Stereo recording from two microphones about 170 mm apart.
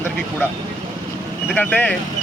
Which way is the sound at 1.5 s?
10° left (ahead or behind).